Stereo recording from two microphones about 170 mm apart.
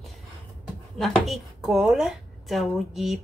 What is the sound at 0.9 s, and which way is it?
A woman's voice, centre (ahead or behind).